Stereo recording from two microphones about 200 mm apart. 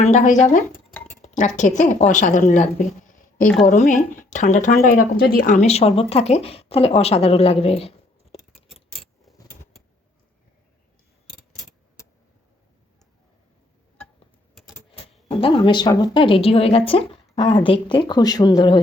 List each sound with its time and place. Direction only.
0.0 s a woman's voice: 35° left (ahead or behind)
15.4 s speech: 25° left (ahead or behind)